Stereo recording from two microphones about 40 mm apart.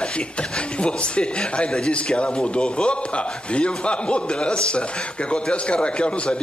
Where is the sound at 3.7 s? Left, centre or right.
Left.